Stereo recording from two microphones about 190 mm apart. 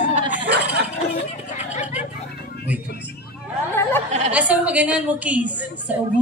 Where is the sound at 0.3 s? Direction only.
10° right (ahead or behind).